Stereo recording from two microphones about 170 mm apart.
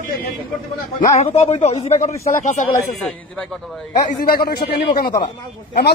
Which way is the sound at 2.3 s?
45° left (ahead or behind).